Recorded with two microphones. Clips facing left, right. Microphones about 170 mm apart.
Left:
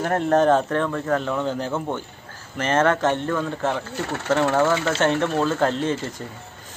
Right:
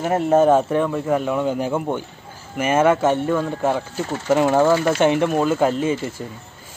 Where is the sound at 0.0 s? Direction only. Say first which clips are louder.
Right 3 dB; 5° right (ahead or behind).